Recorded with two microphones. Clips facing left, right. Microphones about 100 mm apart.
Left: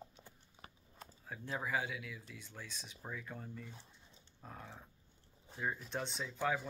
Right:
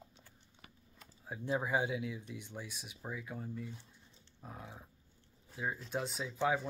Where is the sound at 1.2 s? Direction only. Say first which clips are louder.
Right 6 dB; 20° right (ahead or behind).